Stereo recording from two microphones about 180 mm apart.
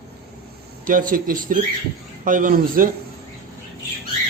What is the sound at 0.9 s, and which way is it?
Speech, 50° right (ahead or behind).